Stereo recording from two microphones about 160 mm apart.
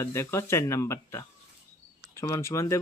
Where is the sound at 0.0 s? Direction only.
15° left (ahead or behind).